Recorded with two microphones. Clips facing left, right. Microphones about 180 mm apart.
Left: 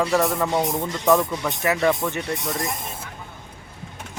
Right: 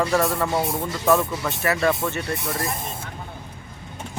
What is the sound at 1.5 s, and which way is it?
Speech, 15° left (ahead or behind).